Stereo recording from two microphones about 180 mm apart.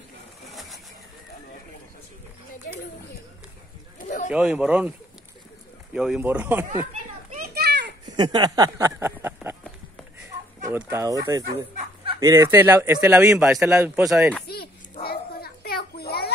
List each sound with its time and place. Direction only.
4.0 s a sound: 45° left (ahead or behind)
4.3 s speech: 5° right (ahead or behind)
5.9 s speech: 5° right (ahead or behind)
7.2 s children playing: 55° right (ahead or behind)
8.2 s speech: 25° right (ahead or behind)
10.7 s speech: 15° right (ahead or behind)
14.5 s children playing: 60° left (ahead or behind)